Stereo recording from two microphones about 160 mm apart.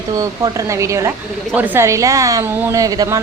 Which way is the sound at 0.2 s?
20° right (ahead or behind).